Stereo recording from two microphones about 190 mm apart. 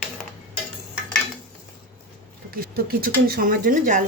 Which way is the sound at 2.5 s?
50° right (ahead or behind).